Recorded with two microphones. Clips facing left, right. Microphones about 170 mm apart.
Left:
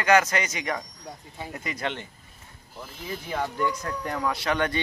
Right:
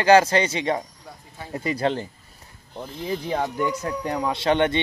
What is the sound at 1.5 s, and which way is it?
Speech, 30° right (ahead or behind).